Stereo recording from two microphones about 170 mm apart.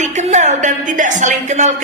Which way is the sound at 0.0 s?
45° right (ahead or behind).